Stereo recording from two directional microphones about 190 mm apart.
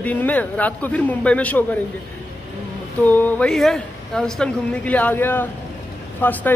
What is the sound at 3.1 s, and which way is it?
A man's voice, 10° left (ahead or behind).